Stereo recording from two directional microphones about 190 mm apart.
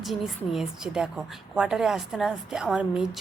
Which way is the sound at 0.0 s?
Centre (ahead or behind).